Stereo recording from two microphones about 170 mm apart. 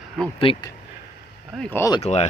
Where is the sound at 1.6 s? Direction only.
15° left (ahead or behind).